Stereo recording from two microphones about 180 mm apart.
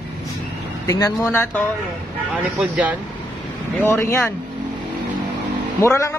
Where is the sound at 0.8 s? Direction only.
15° left (ahead or behind).